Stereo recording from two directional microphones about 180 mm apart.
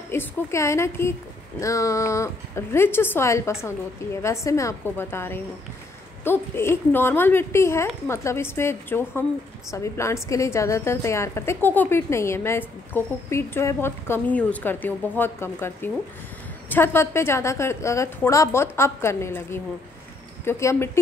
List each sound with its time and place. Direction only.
0.1 s a woman's voice: 15° left (ahead or behind)